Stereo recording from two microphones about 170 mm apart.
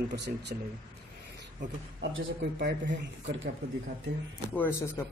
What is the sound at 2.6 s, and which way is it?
Speech, 90° right.